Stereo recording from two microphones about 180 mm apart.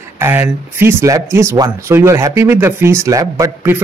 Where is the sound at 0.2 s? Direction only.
15° right (ahead or behind).